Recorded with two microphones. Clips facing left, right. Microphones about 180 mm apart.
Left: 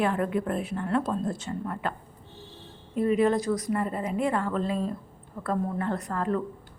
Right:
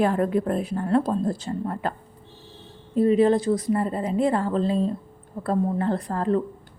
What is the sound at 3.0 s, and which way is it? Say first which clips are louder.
A woman's voice: right 5 dB; 30° right (ahead or behind).